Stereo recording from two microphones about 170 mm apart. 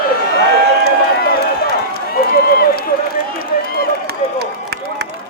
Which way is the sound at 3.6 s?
65° left (ahead or behind).